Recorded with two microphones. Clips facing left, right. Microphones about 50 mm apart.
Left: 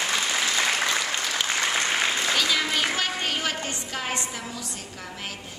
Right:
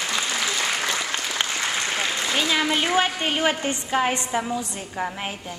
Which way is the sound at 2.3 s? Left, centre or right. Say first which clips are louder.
Right 2 dB; right.